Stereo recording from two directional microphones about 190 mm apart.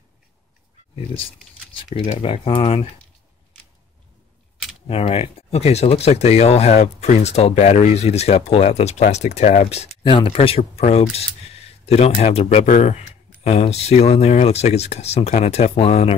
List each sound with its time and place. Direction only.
1.1 s speech: 30° left (ahead or behind)
4.8 s speech: 30° left (ahead or behind)